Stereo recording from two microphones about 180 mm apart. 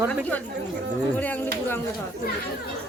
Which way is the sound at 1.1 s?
10° left (ahead or behind).